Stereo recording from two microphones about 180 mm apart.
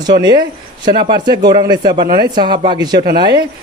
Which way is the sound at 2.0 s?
55° right (ahead or behind).